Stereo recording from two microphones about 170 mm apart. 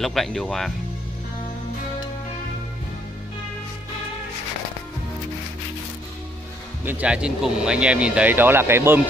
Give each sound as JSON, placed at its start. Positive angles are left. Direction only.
{"t": 0.0, "sound": "speech", "side_deg": 0}
{"t": 6.8, "sound": "speech", "side_deg": -10}